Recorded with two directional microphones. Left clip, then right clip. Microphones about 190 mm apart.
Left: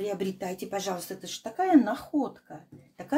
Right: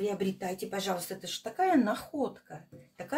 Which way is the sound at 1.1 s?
20° left (ahead or behind).